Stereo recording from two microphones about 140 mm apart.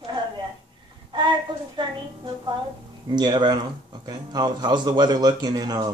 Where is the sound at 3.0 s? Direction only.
30° right (ahead or behind).